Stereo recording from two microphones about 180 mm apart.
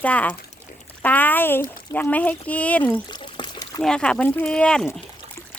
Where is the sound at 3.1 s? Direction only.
25° left (ahead or behind).